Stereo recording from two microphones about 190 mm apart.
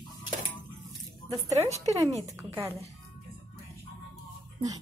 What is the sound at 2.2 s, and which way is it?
Speech, 15° right (ahead or behind).